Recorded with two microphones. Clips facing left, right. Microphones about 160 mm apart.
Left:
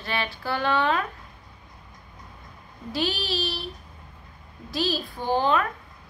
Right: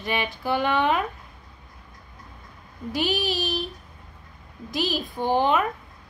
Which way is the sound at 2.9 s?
15° right (ahead or behind).